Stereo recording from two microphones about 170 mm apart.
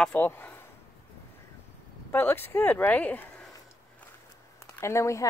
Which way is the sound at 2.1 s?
10° left (ahead or behind).